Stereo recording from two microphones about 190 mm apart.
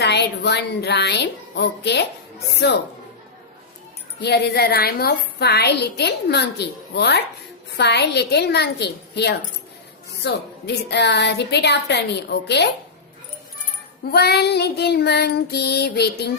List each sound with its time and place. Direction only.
0.0 s a woman's voice: 60° left (ahead or behind)
4.2 s a woman's voice: 60° left (ahead or behind)
14.0 s a woman's voice: 55° left (ahead or behind)